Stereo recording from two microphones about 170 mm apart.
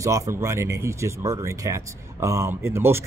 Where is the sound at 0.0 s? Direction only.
20° right (ahead or behind).